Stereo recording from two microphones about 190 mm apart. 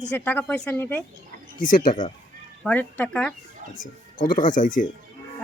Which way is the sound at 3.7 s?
45° left (ahead or behind).